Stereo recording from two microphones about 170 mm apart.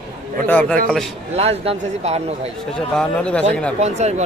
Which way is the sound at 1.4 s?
35° right (ahead or behind).